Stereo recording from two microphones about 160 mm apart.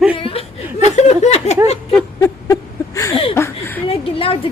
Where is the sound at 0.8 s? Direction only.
45° left (ahead or behind).